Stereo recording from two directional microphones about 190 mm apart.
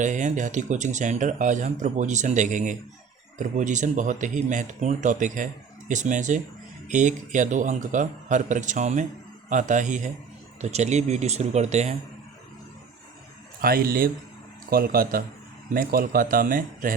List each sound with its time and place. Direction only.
0.0 s speech: 40° right (ahead or behind)
13.6 s speech: 50° right (ahead or behind)